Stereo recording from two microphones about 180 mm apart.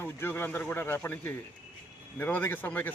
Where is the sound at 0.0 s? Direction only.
10° left (ahead or behind).